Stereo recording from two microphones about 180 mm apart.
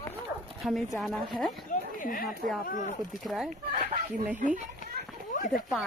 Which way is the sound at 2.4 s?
50° right (ahead or behind).